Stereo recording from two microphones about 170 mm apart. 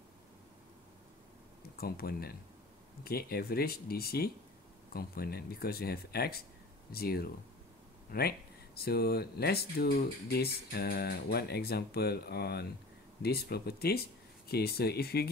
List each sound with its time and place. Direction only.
1.8 s speech: 60° left (ahead or behind)